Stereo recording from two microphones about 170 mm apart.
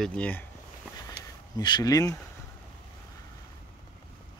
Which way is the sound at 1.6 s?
25° left (ahead or behind).